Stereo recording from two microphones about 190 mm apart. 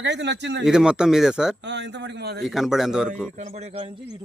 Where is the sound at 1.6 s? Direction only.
65° right (ahead or behind).